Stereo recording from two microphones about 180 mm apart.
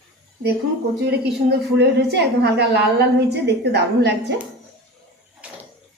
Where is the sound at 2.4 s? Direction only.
65° right (ahead or behind).